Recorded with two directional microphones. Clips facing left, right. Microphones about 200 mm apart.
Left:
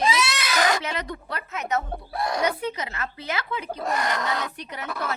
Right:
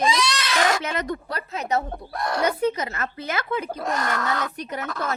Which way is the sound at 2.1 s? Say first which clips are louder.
Even; centre (ahead or behind).